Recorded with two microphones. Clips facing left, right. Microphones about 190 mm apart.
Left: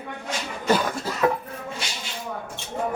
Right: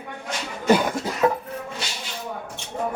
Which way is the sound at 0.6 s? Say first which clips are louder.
Right 4 dB; 15° right (ahead or behind).